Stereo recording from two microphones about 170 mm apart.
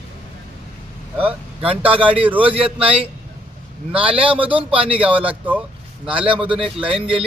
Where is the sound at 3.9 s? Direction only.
10° right (ahead or behind).